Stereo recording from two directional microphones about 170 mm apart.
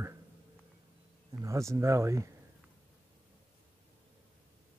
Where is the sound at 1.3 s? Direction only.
15° right (ahead or behind).